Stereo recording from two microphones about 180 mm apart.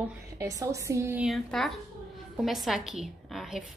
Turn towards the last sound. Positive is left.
turn(degrees=0)  # may be behind; listen again after turning